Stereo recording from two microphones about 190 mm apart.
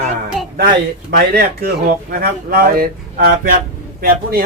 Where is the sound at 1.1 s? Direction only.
55° right (ahead or behind).